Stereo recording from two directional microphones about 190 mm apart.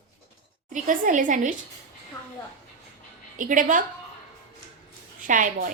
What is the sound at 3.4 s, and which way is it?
Speech, 45° right (ahead or behind).